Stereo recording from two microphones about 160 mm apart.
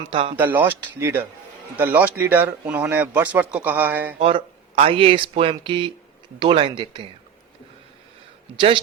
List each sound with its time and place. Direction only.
0.1 s speech: 35° right (ahead or behind)
0.3 s speech: 15° right (ahead or behind)
4.2 s speech: 35° right (ahead or behind)
8.5 s speech: 30° right (ahead or behind)